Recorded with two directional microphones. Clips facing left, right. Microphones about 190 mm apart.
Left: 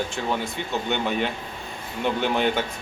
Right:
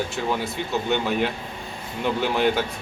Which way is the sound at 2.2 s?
Centre (ahead or behind).